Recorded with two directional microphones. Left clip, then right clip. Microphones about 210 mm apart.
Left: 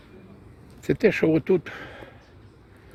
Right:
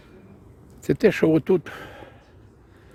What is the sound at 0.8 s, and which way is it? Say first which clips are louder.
Speech: right 2 dB; 20° right (ahead or behind).